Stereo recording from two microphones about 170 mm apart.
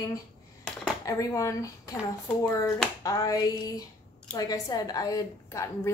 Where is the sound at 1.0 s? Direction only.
20° left (ahead or behind).